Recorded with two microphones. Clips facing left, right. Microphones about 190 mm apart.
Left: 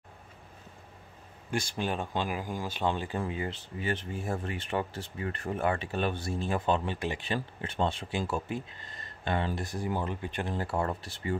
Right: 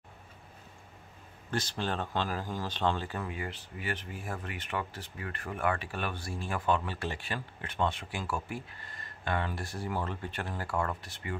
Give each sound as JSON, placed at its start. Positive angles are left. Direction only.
{"t": 1.5, "sound": "speech", "side_deg": 10}
{"t": 7.3, "sound": "speech", "side_deg": 30}